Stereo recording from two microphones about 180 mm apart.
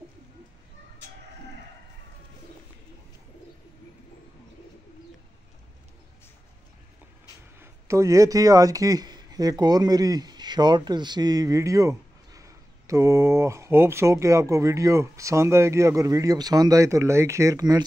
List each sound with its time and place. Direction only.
7.5 s speech: 15° right (ahead or behind)